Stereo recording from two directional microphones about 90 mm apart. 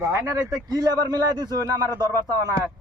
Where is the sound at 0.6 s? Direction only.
45° right (ahead or behind).